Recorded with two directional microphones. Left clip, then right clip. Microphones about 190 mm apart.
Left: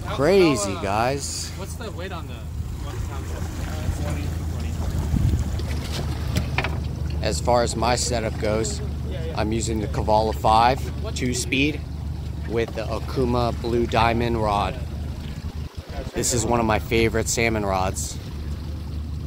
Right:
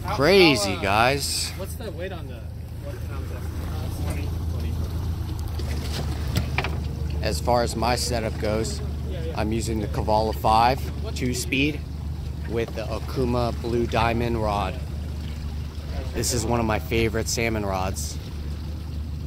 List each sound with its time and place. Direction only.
0.2 s speech: 5° left (ahead or behind)
0.6 s speech: 50° right (ahead or behind)
0.8 s speech: centre (ahead or behind)
5.8 s boat: 45° left (ahead or behind)
7.2 s speech: 5° right (ahead or behind)
10.1 s speech: 10° left (ahead or behind)
12.5 s speech: 5° left (ahead or behind)
16.3 s speech: 5° left (ahead or behind)